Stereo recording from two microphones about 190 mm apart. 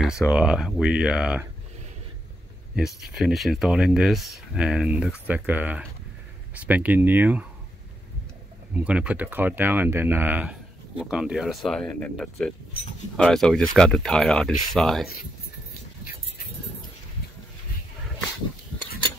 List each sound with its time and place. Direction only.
0.3 s speech: 5° right (ahead or behind)
2.7 s speech: 5° right (ahead or behind)
8.7 s speech: 5° right (ahead or behind)